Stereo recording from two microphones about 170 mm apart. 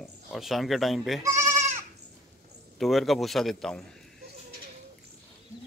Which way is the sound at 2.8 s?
Centre (ahead or behind).